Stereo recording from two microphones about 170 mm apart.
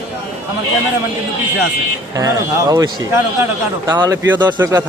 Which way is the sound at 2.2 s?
20° right (ahead or behind).